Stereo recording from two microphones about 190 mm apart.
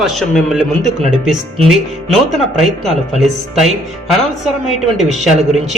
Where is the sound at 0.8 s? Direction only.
35° right (ahead or behind).